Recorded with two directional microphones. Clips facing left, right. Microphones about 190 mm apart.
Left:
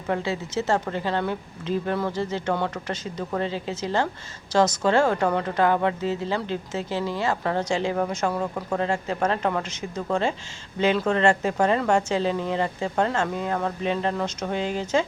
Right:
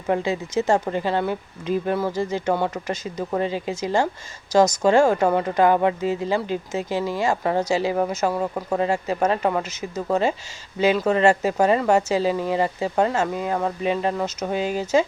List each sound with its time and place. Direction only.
0.1 s speech: 15° right (ahead or behind)